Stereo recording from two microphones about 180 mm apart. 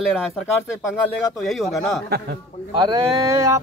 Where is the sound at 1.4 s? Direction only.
Centre (ahead or behind).